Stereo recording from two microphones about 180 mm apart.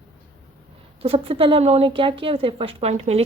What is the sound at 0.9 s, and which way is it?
A woman's voice, 35° right (ahead or behind).